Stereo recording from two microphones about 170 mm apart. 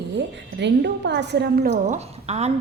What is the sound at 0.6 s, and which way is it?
A woman's voice, 90° right.